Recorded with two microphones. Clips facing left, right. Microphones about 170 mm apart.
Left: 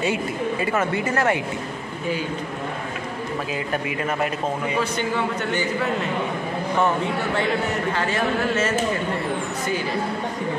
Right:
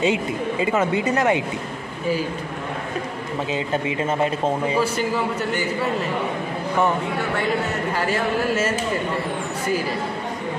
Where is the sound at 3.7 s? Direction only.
25° right (ahead or behind).